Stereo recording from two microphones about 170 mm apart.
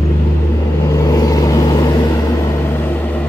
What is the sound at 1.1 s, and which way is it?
Vehicle, 20° left (ahead or behind).